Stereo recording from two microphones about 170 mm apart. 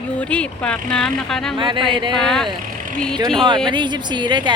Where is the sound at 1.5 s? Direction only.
30° right (ahead or behind).